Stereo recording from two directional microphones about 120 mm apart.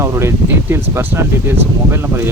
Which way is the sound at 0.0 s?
20° right (ahead or behind).